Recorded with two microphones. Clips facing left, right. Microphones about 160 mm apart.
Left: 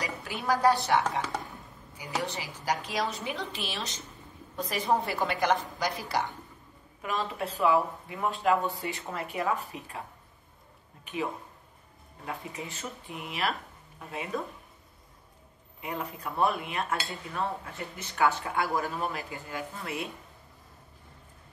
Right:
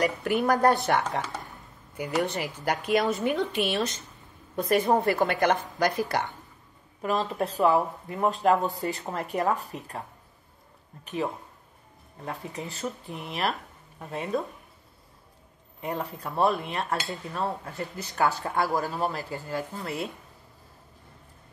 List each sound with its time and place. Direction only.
0.0 s a woman's voice: 60° right (ahead or behind)
7.0 s speech: 40° right (ahead or behind)
12.3 s speech: 35° right (ahead or behind)
15.8 s speech: 35° right (ahead or behind)